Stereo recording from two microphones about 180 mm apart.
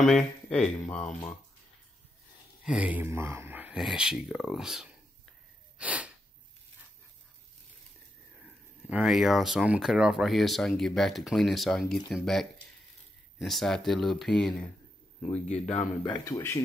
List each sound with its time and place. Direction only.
0.0 s speech: 5° left (ahead or behind)
2.6 s speech: 5° right (ahead or behind)
5.8 s sneeze: 5° right (ahead or behind)
8.8 s speech: 5° right (ahead or behind)
16.0 s speech: 20° left (ahead or behind)